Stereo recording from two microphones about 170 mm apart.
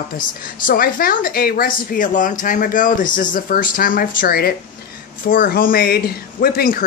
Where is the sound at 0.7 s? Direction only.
55° left (ahead or behind).